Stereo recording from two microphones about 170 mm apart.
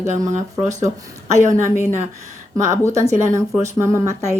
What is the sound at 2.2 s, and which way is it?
Speech, 15° right (ahead or behind).